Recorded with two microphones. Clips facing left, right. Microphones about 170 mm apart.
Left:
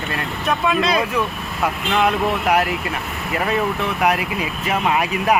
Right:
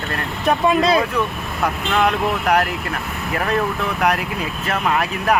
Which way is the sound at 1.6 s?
5° left (ahead or behind).